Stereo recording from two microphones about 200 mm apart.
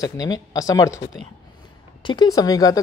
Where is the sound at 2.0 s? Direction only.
25° left (ahead or behind).